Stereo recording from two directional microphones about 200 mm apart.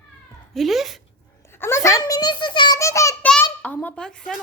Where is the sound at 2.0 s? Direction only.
20° left (ahead or behind).